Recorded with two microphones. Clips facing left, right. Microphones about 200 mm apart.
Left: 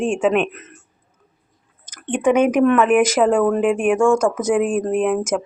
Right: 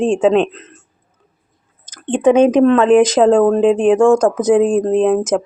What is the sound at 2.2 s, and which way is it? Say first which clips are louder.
Speech: right 5 dB; 25° right (ahead or behind).